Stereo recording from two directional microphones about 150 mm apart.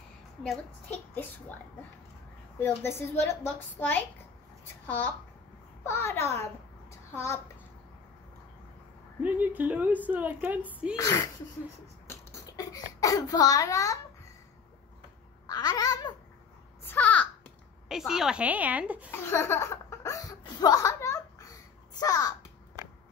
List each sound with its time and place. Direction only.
0.4 s a child's voice: 10° left (ahead or behind)
2.6 s a child's voice: 15° left (ahead or behind)
9.2 s a woman's voice: 10° right (ahead or behind)
11.0 s a child's voice: 20° left (ahead or behind)
12.1 s a sound: 25° left (ahead or behind)
15.4 s babbling: 30° left (ahead or behind)
16.8 s a sound: 10° left (ahead or behind)
17.8 s a woman's voice: 5° right (ahead or behind)
19.0 s laughter: 15° left (ahead or behind)
22.0 s a child's voice: 25° left (ahead or behind)